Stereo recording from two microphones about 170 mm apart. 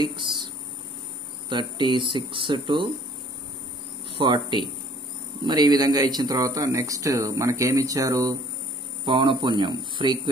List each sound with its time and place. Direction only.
0.0 s a sound: 30° right (ahead or behind)
1.5 s speech: 25° right (ahead or behind)
4.2 s speech: 25° right (ahead or behind)